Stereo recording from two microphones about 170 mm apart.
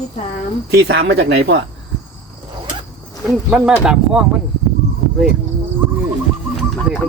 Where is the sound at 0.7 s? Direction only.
75° right (ahead or behind).